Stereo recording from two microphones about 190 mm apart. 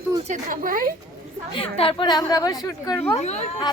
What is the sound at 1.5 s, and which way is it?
A woman's voice, 30° left (ahead or behind).